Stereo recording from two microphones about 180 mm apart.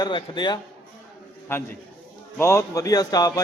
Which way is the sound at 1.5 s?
15° left (ahead or behind).